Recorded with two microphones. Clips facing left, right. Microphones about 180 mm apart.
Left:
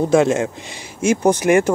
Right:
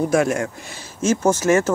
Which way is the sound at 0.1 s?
25° left (ahead or behind).